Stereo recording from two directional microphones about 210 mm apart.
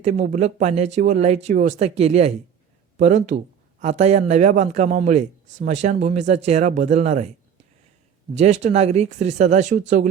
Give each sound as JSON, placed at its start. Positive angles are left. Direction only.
{"t": 0.0, "sound": "a man's voice", "side_deg": -35}
{"t": 8.4, "sound": "a man's voice", "side_deg": -30}